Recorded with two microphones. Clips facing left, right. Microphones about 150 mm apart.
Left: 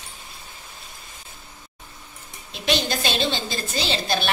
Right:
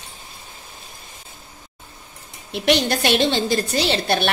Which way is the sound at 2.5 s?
70° right (ahead or behind).